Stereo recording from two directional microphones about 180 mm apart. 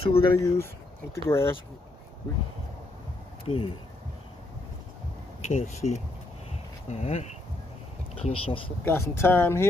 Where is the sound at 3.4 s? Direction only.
30° left (ahead or behind).